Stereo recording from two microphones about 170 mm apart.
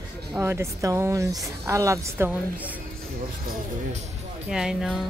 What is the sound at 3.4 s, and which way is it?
Music, 55° right (ahead or behind).